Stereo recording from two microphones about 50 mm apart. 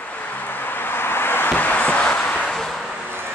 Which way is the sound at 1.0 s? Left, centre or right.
Left.